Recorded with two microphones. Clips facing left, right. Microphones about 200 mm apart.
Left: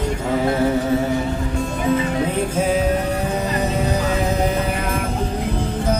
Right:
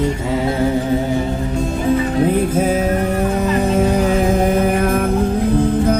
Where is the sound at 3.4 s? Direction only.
50° right (ahead or behind).